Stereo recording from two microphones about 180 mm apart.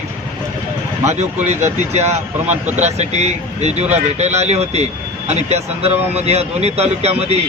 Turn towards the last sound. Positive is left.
turn(degrees=-35)  # may be behind; listen again after turning